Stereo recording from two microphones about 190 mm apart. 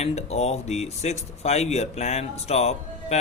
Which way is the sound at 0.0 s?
35° left (ahead or behind).